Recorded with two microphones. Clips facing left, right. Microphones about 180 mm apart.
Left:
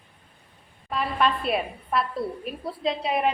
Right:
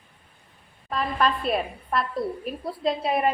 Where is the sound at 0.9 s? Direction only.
5° left (ahead or behind).